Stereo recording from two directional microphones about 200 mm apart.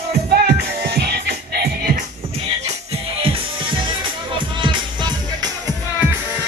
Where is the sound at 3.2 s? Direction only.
25° right (ahead or behind).